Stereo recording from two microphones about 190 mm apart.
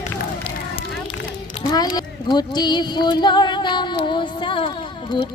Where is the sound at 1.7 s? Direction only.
20° left (ahead or behind).